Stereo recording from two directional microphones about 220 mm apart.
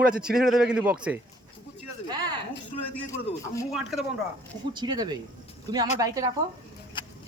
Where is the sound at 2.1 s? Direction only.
20° right (ahead or behind).